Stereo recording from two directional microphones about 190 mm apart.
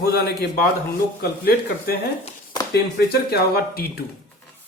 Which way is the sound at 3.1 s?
55° left (ahead or behind).